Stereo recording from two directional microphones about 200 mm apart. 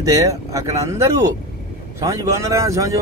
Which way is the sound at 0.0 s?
15° right (ahead or behind).